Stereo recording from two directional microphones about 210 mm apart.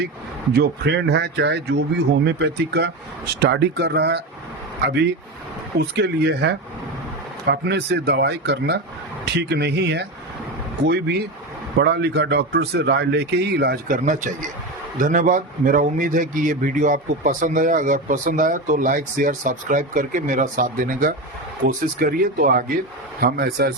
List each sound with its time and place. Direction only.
0.5 s speech: 50° right (ahead or behind)
5.8 s a man's voice: 50° right (ahead or behind)